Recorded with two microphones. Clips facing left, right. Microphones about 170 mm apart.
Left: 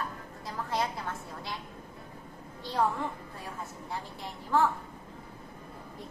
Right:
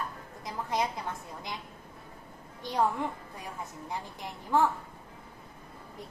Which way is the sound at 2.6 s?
15° right (ahead or behind).